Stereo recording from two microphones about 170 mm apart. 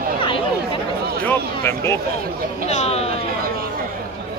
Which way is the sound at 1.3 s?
15° left (ahead or behind).